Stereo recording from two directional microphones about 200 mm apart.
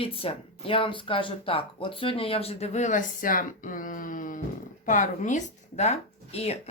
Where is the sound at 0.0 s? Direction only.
30° left (ahead or behind).